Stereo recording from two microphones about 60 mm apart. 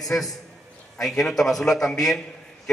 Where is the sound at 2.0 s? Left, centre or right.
Centre.